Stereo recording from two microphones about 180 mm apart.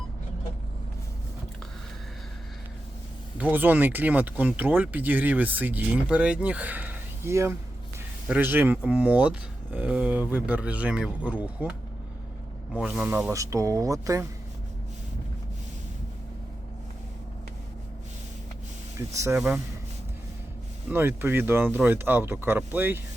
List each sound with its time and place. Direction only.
3.3 s speech: 10° right (ahead or behind)
12.7 s speech: 5° right (ahead or behind)
18.9 s speech: 15° right (ahead or behind)
20.9 s speech: 10° right (ahead or behind)